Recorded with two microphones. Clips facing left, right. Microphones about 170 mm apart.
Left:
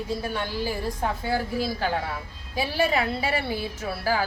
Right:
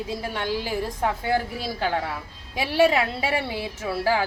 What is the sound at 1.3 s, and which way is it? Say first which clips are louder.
Speech: even; 20° right (ahead or behind).